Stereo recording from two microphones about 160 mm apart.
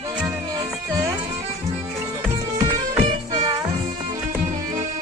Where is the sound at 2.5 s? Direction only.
25° right (ahead or behind).